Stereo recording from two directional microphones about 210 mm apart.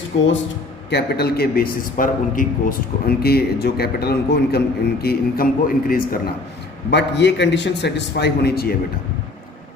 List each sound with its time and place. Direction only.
0.9 s a man's voice: 50° left (ahead or behind)
6.9 s a man's voice: 55° left (ahead or behind)